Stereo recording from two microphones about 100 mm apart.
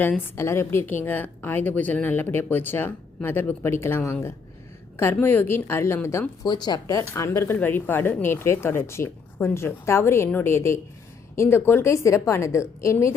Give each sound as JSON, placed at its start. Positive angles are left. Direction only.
{"t": 0.3, "sound": "a woman's voice", "side_deg": 25}
{"t": 6.4, "sound": "speech", "side_deg": 45}
{"t": 7.1, "sound": "a woman's voice", "side_deg": 25}